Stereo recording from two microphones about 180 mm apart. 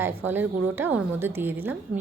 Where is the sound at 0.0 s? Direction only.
10° right (ahead or behind).